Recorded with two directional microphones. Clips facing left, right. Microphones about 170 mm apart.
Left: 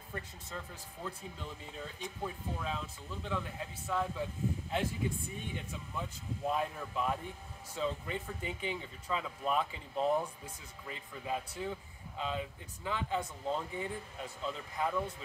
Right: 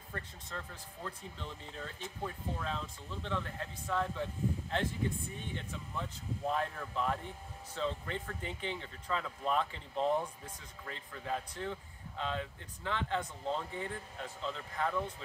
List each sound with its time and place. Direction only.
0.1 s speech: 10° left (ahead or behind)